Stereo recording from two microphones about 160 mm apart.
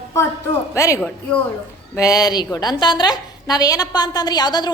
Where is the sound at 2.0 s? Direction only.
20° left (ahead or behind).